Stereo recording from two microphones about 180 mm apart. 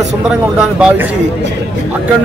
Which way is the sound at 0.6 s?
5° right (ahead or behind).